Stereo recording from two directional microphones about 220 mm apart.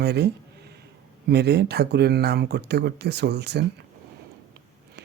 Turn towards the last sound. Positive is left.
turn(degrees=-50)  # may be behind; listen again after turning